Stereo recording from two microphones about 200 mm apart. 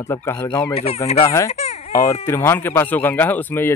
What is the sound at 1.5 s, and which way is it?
Baby cry, 30° left (ahead or behind).